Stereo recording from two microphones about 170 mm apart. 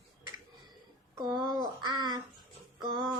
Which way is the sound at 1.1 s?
25° right (ahead or behind).